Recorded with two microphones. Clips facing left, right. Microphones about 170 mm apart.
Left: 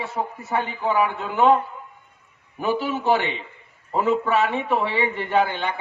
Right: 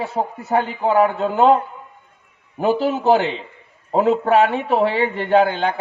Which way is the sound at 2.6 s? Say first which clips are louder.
Right 5 dB; 35° right (ahead or behind).